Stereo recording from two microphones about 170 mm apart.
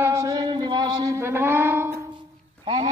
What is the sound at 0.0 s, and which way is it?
Music, 15° right (ahead or behind).